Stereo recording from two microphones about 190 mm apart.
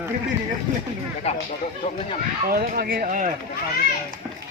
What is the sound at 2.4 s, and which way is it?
Speech, 50° right (ahead or behind).